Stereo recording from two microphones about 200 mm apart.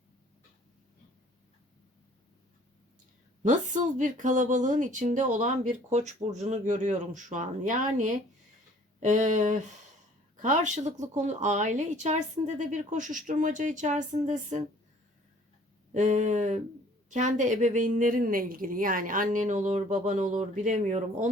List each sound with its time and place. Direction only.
3.4 s speech: 40° right (ahead or behind)
15.9 s speech: 35° right (ahead or behind)